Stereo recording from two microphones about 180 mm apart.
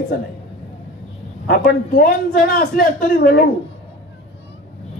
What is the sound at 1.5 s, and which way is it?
A man's voice, 55° left (ahead or behind).